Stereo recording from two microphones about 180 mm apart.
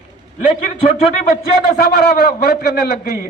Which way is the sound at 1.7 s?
60° left (ahead or behind).